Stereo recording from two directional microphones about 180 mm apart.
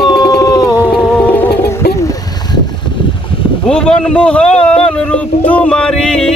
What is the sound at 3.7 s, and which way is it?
Speech, 5° left (ahead or behind).